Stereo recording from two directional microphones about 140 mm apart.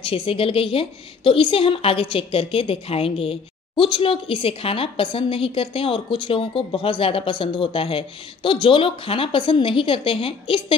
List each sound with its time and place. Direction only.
0.0 s a woman's voice: 40° left (ahead or behind)